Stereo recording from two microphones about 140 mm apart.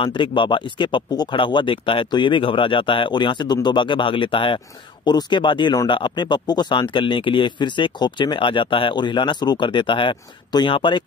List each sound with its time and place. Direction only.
0.0 s speech: 35° left (ahead or behind)